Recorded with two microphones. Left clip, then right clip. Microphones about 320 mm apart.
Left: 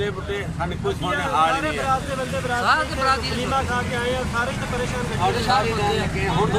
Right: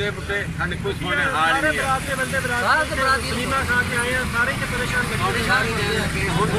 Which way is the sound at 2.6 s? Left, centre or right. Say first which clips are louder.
Even; centre.